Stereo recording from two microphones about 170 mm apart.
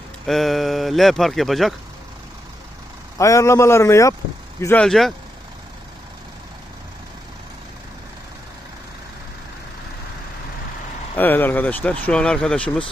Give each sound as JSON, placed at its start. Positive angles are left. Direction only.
{"t": 0.3, "sound": "speech", "side_deg": 0}
{"t": 3.2, "sound": "speech", "side_deg": 20}
{"t": 11.1, "sound": "speech", "side_deg": 10}